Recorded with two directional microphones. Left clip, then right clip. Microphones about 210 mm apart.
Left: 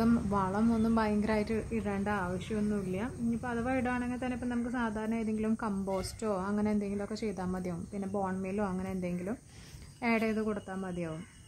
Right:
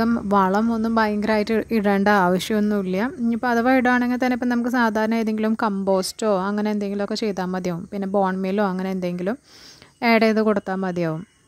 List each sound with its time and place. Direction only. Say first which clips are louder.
0.0 s a woman's voice: right 12 dB; 40° right (ahead or behind)